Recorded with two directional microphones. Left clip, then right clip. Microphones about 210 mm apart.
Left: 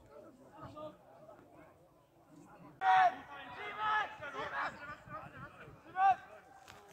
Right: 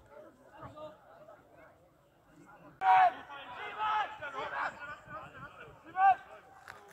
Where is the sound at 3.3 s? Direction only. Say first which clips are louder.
Right 3 dB; 5° left (ahead or behind).